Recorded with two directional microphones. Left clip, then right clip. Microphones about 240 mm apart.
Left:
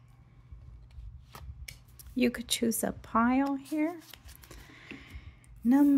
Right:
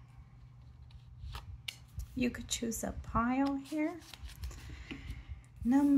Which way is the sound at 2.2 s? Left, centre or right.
Left.